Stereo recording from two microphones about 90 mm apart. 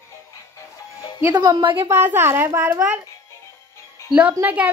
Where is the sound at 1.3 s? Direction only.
50° right (ahead or behind).